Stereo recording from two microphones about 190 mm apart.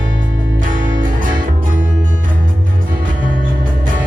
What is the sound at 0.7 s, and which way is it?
Music, 45° right (ahead or behind).